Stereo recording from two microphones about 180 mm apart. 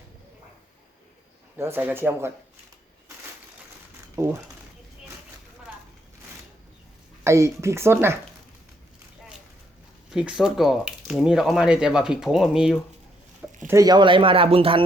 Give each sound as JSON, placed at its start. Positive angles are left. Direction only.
{"t": 1.5, "sound": "speech", "side_deg": -15}
{"t": 4.2, "sound": "speech", "side_deg": -20}
{"t": 7.3, "sound": "speech", "side_deg": -15}
{"t": 10.1, "sound": "speech", "side_deg": -5}
{"t": 13.7, "sound": "speech", "side_deg": -20}